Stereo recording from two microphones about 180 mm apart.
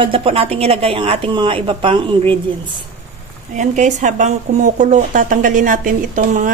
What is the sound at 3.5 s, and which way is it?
Speech, 40° right (ahead or behind).